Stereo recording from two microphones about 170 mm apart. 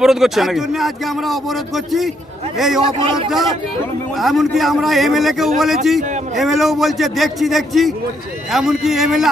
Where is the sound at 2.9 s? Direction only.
30° right (ahead or behind).